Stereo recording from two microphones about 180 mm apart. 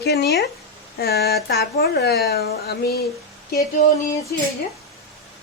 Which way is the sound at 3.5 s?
20° left (ahead or behind).